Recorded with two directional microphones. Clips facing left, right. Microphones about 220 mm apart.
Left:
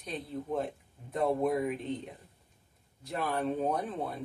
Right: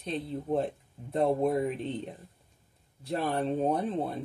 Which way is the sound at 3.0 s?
35° right (ahead or behind).